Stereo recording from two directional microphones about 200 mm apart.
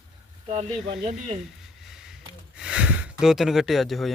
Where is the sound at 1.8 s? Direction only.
Centre (ahead or behind).